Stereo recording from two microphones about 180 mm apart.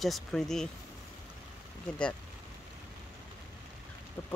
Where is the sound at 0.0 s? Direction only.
Centre (ahead or behind).